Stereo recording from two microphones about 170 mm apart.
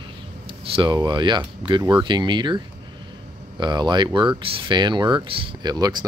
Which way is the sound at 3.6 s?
25° right (ahead or behind).